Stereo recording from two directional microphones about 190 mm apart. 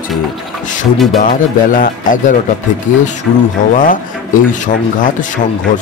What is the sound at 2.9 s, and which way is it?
Speech, 75° left (ahead or behind).